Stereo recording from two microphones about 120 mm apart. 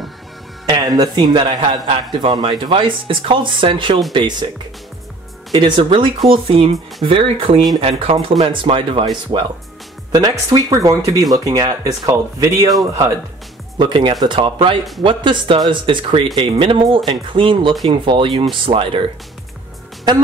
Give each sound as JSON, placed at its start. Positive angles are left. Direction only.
{"t": 0.7, "sound": "speech", "side_deg": -35}
{"t": 5.5, "sound": "speech", "side_deg": -40}
{"t": 10.1, "sound": "speech", "side_deg": -30}
{"t": 13.7, "sound": "speech", "side_deg": -45}